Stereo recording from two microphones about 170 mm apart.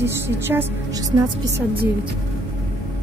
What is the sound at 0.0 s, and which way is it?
A woman's voice, 15° right (ahead or behind).